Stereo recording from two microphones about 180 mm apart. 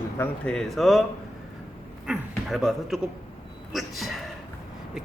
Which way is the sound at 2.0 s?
Centre (ahead or behind).